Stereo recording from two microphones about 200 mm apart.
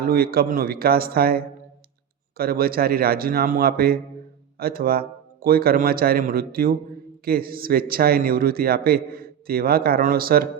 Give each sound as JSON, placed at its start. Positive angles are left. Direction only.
{"t": 0.0, "sound": "speech", "side_deg": -50}